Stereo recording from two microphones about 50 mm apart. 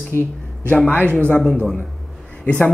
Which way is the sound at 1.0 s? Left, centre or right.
Left.